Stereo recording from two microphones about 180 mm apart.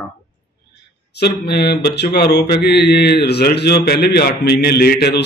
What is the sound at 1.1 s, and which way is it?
Mantra, 65° left (ahead or behind).